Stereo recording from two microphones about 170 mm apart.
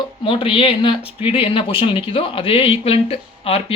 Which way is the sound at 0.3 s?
30° left (ahead or behind).